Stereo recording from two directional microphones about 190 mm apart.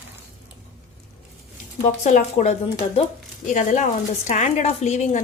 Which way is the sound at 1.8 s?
40° left (ahead or behind).